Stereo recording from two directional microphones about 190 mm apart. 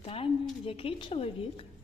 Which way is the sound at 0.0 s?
30° left (ahead or behind).